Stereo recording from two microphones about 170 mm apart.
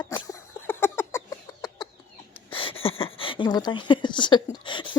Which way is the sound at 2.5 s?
30° left (ahead or behind).